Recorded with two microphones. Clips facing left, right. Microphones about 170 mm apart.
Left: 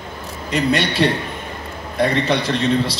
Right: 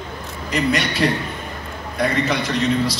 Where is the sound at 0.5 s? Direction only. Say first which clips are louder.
Left 2 dB; 30° left (ahead or behind).